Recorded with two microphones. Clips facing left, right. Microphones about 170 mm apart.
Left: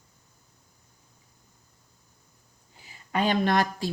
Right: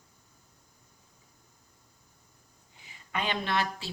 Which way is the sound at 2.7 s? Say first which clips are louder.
Left 7 dB; 40° left (ahead or behind).